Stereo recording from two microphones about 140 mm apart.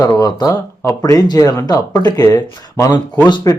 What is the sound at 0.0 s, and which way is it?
Speech, 25° left (ahead or behind).